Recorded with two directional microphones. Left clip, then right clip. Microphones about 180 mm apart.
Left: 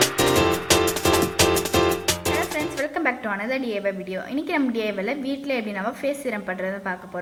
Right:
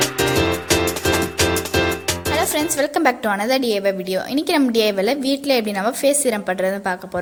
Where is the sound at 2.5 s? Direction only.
45° right (ahead or behind).